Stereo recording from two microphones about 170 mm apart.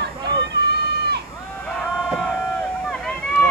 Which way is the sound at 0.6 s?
75° right (ahead or behind).